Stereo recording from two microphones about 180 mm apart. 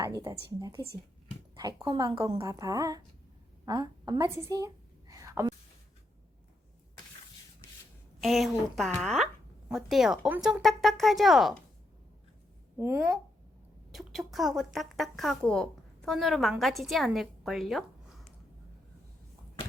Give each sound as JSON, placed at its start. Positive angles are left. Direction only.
{"t": 0.0, "sound": "a woman's voice", "side_deg": -15}
{"t": 8.2, "sound": "speech", "side_deg": 0}
{"t": 12.8, "sound": "speech", "side_deg": -15}
{"t": 13.9, "sound": "speech", "side_deg": 0}